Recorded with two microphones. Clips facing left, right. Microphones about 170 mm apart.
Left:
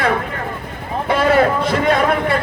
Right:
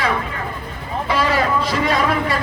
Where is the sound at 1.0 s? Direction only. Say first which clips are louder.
Left 5 dB; 55° left (ahead or behind).